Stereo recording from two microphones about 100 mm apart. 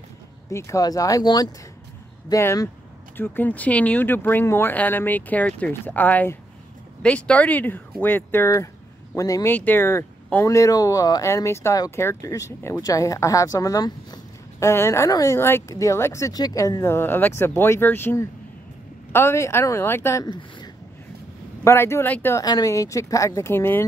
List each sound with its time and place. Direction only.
0.5 s speech: 30° left (ahead or behind)
3.2 s speech: 20° left (ahead or behind); by 9.5 s 35° left (ahead or behind)
9.5 s speech: 20° left (ahead or behind); by 14.7 s 40° left (ahead or behind)
14.7 s speech: 30° left (ahead or behind)
16.9 s speech: 20° left (ahead or behind)
20.2 s speech: 45° left (ahead or behind)
21.6 s speech: 25° left (ahead or behind)
22.4 s speech: 40° left (ahead or behind); by 23.8 s 20° left (ahead or behind)